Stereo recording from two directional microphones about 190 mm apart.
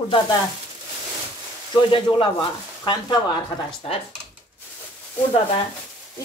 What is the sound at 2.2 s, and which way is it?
Speech, 25° left (ahead or behind).